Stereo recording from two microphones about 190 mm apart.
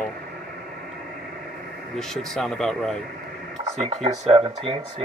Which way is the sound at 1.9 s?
Centre (ahead or behind).